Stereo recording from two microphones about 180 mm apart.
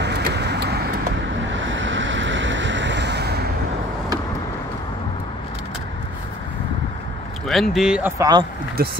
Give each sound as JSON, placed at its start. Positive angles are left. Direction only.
{"t": 0.0, "sound": "vehicle", "side_deg": -70}
{"t": 1.5, "sound": "vehicle", "side_deg": -90}
{"t": 7.4, "sound": "speech", "side_deg": 0}
{"t": 8.2, "sound": "speech", "side_deg": -20}
{"t": 8.8, "sound": "speech", "side_deg": -55}